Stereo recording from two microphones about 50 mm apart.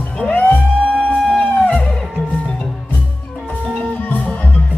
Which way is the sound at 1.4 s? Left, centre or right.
Left.